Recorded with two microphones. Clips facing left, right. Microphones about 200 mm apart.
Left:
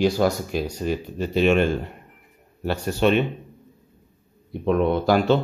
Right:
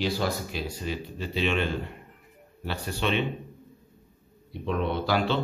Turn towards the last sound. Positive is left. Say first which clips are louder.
# left 7 dB
turn(degrees=50)  # may be behind; listen again after turning